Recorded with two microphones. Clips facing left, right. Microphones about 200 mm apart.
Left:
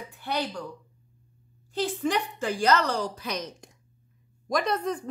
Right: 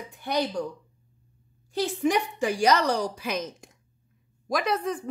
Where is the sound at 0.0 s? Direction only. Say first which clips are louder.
Right 3 dB; 15° right (ahead or behind).